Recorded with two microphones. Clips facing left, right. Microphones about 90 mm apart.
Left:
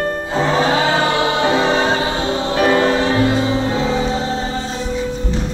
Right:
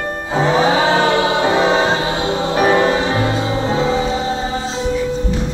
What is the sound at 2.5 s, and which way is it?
Music, 15° right (ahead or behind).